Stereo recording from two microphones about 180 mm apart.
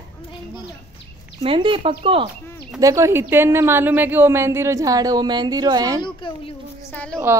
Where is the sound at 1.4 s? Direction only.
30° right (ahead or behind).